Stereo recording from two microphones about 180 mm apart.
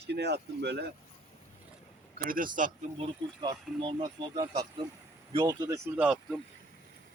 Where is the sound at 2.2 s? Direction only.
50° right (ahead or behind).